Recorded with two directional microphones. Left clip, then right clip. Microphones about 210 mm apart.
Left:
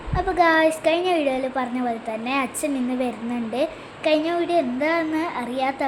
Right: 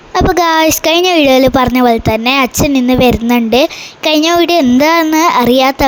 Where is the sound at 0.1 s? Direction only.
45° right (ahead or behind).